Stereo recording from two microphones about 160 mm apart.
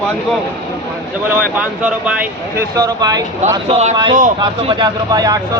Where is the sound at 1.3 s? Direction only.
10° right (ahead or behind).